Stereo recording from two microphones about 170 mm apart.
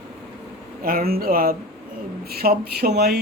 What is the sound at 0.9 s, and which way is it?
Speech, 60° right (ahead or behind).